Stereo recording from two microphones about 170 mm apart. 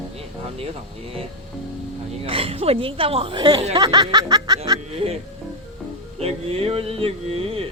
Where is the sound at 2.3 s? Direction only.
35° right (ahead or behind).